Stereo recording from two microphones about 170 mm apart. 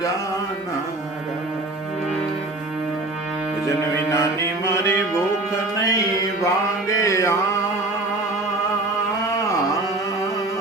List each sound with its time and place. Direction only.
4.1 s music: 15° left (ahead or behind)
5.8 s mantra: 20° left (ahead or behind)